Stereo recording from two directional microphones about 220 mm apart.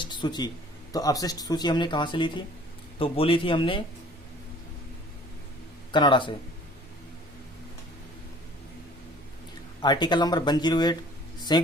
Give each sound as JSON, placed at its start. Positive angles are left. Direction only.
{"t": 0.0, "sound": "a sound", "side_deg": 20}
{"t": 0.9, "sound": "speech", "side_deg": 15}
{"t": 5.9, "sound": "speech", "side_deg": 20}
{"t": 9.8, "sound": "a man's voice", "side_deg": 20}